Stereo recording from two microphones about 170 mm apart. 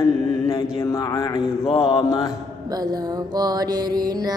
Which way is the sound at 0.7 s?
20° left (ahead or behind).